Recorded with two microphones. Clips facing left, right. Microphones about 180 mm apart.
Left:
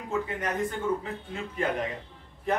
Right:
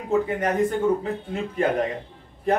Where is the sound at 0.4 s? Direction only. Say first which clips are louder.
Right 8 dB; 40° right (ahead or behind).